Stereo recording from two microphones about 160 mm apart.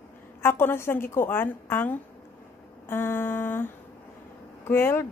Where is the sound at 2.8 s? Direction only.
15° left (ahead or behind).